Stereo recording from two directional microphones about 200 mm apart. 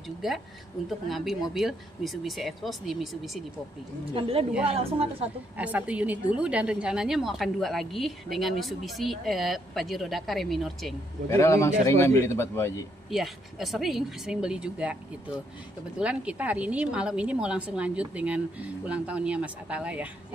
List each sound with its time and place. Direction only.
0.2 s a woman's voice: centre (ahead or behind)
4.1 s a woman's voice: 25° right (ahead or behind)
5.6 s a woman's voice: 5° right (ahead or behind)
11.2 s speech: 15° left (ahead or behind)
13.1 s a woman's voice: centre (ahead or behind)
16.0 s a woman's voice: 5° right (ahead or behind)